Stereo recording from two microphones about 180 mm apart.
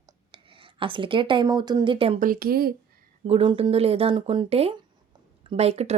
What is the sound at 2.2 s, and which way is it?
Speech, 55° right (ahead or behind).